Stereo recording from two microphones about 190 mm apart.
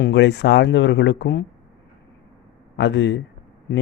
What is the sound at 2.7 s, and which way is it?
Speech, 70° left (ahead or behind).